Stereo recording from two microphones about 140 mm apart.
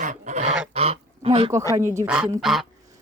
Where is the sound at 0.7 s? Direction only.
45° right (ahead or behind).